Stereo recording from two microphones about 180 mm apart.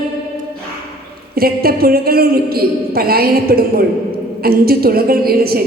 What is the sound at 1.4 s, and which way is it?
A man's voice, 60° right (ahead or behind).